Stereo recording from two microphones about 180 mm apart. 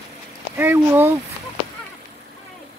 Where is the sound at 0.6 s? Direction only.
10° right (ahead or behind).